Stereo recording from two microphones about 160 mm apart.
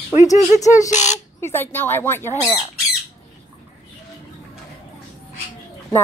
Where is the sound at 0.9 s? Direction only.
45° left (ahead or behind).